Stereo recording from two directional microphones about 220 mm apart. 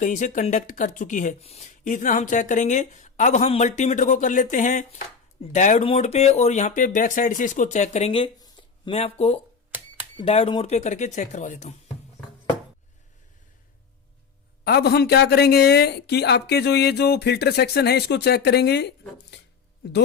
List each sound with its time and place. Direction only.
0.0 s speech: 35° left (ahead or behind)
14.6 s speech: 45° left (ahead or behind)